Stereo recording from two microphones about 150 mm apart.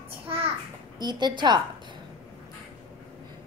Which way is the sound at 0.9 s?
30° right (ahead or behind).